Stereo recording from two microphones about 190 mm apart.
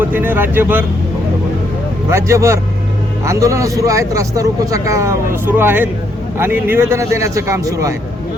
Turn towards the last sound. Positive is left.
turn(degrees=-15)  # may be behind; listen again after turning